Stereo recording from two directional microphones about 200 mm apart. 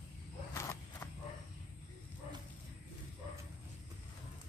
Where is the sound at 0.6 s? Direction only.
15° left (ahead or behind).